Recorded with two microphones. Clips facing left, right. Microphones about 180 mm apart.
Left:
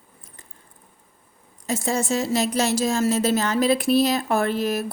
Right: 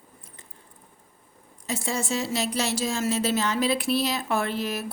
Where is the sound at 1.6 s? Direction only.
45° left (ahead or behind).